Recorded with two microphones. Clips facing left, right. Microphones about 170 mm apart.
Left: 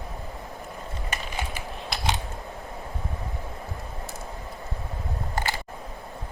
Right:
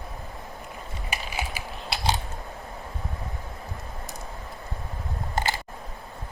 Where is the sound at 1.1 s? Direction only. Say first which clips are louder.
Right 1 dB; 10° right (ahead or behind).